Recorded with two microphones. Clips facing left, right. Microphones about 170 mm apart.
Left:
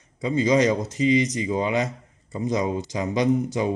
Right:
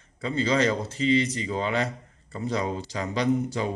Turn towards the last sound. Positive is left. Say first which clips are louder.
# left 3 dB
turn(degrees=20)  # may be behind; listen again after turning